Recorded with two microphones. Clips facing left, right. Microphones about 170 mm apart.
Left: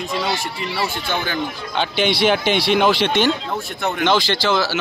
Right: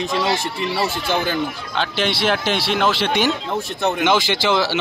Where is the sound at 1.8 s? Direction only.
Centre (ahead or behind).